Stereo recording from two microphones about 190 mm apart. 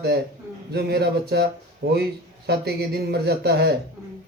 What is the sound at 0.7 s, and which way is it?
Speech, 60° right (ahead or behind).